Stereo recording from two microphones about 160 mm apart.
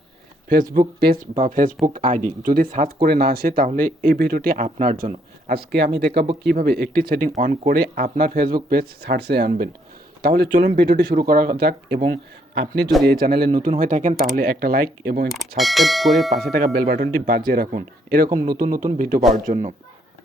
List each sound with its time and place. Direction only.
0.7 s speech: 65° right (ahead or behind); by 7.8 s 50° right (ahead or behind)
7.8 s speech: 60° right (ahead or behind)
10.5 s speech: 50° right (ahead or behind)
10.8 s speech: 65° right (ahead or behind)
13.1 s speech: 70° right (ahead or behind)
15.3 s clang: centre (ahead or behind)
16.5 s speech: 70° right (ahead or behind)
19.3 s speech: 50° right (ahead or behind)